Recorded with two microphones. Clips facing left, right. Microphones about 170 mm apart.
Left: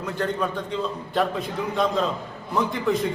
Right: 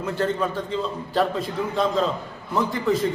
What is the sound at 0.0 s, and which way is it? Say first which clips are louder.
A man's voice: right 2 dB; 5° right (ahead or behind).